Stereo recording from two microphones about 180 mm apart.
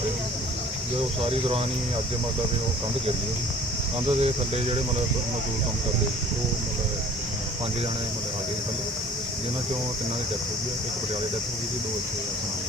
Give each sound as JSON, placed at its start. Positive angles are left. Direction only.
{"t": 1.2, "sound": "speech", "side_deg": -30}
{"t": 4.2, "sound": "speech", "side_deg": -35}